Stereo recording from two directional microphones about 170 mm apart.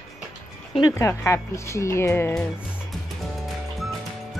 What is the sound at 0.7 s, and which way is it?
Speech, 20° left (ahead or behind).